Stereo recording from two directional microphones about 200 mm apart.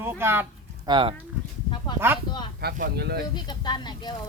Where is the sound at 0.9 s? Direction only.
25° right (ahead or behind).